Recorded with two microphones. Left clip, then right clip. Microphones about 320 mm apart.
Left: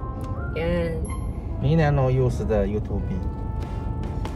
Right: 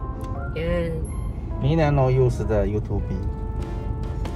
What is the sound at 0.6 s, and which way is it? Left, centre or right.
Music, centre.